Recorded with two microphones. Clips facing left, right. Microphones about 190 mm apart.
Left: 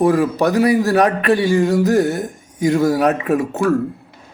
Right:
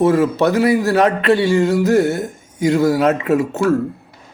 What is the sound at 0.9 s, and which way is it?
Speech, 15° left (ahead or behind).